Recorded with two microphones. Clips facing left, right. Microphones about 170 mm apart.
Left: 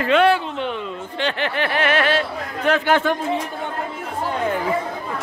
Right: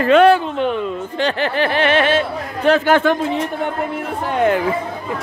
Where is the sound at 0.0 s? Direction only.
45° right (ahead or behind); by 2.8 s 25° right (ahead or behind).